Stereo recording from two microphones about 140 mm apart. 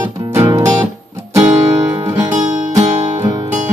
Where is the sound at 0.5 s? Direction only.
25° right (ahead or behind).